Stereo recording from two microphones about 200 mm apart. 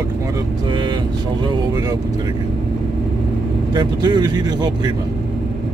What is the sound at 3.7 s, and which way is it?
Speech, 20° right (ahead or behind).